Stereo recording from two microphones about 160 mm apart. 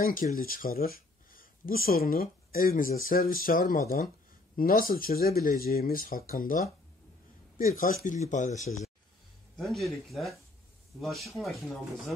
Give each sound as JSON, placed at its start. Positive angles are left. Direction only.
{"t": 0.0, "sound": "speech", "side_deg": 60}
{"t": 7.8, "sound": "speech", "side_deg": 55}
{"t": 9.6, "sound": "speech", "side_deg": 0}